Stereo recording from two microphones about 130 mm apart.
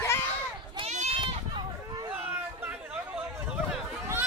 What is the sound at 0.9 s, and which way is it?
Goat, 65° right (ahead or behind).